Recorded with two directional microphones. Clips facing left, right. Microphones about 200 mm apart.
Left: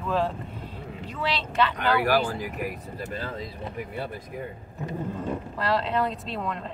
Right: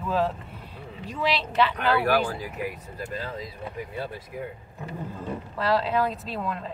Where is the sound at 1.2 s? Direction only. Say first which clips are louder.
Right 2 dB; 10° right (ahead or behind).